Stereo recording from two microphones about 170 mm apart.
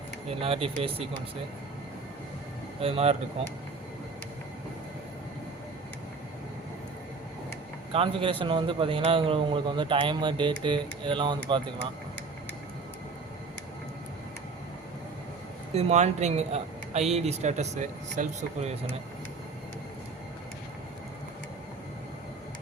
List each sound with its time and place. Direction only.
0.3 s speech: 35° right (ahead or behind)
2.8 s speech: 35° right (ahead or behind)
7.9 s speech: 30° right (ahead or behind)
15.7 s speech: 40° right (ahead or behind)